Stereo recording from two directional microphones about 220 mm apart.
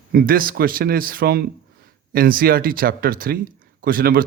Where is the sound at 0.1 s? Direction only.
40° right (ahead or behind).